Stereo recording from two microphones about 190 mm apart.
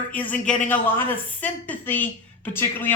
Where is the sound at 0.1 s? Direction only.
10° left (ahead or behind).